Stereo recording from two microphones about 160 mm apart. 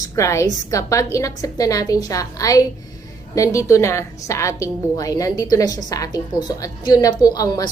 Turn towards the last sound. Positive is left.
turn(degrees=25)  # may be behind; listen again after turning